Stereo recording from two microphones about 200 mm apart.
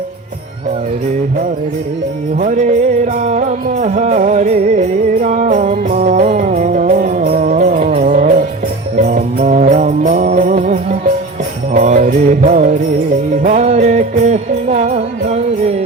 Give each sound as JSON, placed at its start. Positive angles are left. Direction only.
{"t": 2.4, "sound": "music", "side_deg": -40}